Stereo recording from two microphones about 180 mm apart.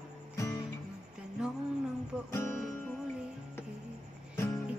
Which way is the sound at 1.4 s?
5° right (ahead or behind).